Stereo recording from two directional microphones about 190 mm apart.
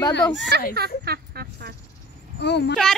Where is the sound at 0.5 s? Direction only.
60° right (ahead or behind).